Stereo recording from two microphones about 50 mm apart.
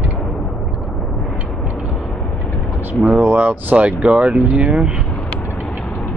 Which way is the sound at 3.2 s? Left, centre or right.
Right.